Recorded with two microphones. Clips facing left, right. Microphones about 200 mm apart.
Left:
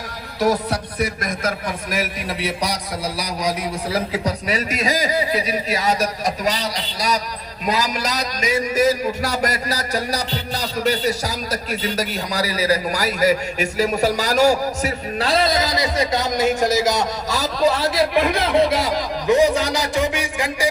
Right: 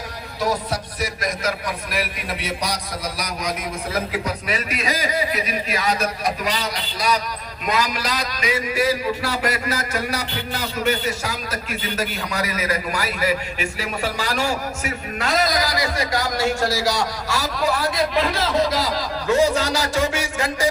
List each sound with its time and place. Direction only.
0.7 s a man's voice: 55° left (ahead or behind); by 20.7 s 15° left (ahead or behind)